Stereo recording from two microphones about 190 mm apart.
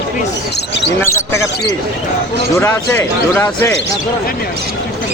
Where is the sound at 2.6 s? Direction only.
10° left (ahead or behind).